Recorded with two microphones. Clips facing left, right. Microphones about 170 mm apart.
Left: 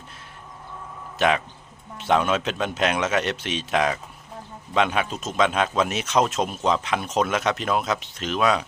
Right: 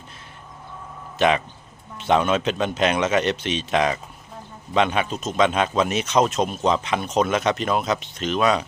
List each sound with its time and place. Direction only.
1.2 s speech: 5° left (ahead or behind)